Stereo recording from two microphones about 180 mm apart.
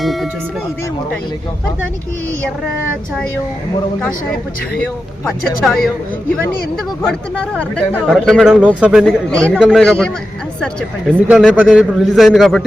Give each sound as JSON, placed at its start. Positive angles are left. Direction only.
{"t": 0.0, "sound": "speech", "side_deg": 0}
{"t": 5.2, "sound": "speech", "side_deg": 0}
{"t": 7.0, "sound": "speech", "side_deg": 5}